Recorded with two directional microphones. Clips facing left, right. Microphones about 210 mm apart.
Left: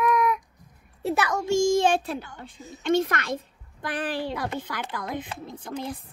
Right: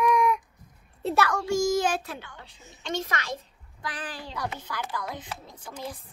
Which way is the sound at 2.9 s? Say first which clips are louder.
Left 8 dB; 60° left (ahead or behind).